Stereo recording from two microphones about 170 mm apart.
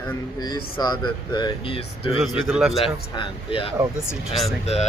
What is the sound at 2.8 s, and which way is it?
Speech, 30° left (ahead or behind).